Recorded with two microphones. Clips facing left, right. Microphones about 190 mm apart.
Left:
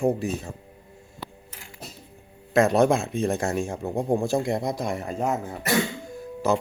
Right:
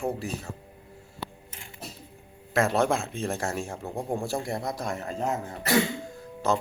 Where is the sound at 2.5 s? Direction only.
15° left (ahead or behind).